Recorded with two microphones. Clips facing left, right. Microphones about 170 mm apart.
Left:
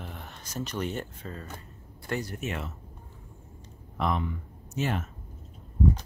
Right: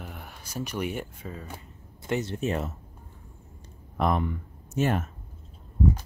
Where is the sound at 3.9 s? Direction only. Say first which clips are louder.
Right 3 dB; 50° right (ahead or behind).